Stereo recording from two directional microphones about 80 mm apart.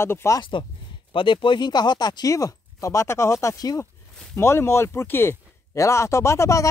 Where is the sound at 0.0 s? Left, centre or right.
Left.